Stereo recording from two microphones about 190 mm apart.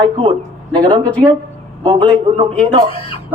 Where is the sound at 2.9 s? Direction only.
30° left (ahead or behind).